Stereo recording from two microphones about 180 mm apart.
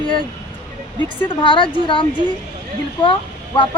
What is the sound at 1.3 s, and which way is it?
Speech, 30° left (ahead or behind).